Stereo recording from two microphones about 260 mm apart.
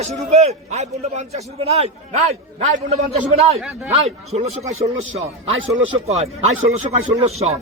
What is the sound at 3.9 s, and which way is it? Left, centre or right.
Speech, right.